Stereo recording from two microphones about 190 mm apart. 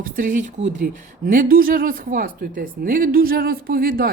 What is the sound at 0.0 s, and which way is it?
Speech, 45° right (ahead or behind).